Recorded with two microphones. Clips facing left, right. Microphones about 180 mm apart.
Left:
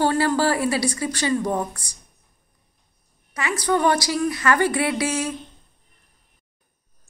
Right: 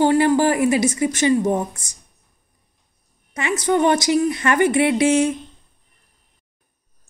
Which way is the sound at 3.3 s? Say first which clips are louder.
Right 3 dB; 25° right (ahead or behind).